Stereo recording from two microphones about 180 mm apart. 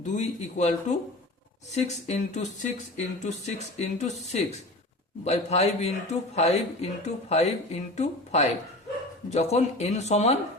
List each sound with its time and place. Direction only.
0.0 s speech: 40° left (ahead or behind)